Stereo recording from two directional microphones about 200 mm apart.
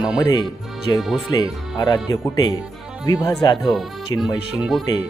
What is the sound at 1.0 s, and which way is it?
Speech, centre (ahead or behind).